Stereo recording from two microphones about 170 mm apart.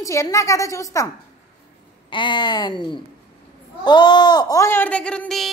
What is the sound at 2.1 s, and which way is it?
A child's voice, 30° left (ahead or behind).